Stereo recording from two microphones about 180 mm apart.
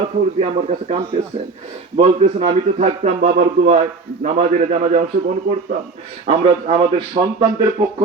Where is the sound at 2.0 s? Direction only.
40° right (ahead or behind).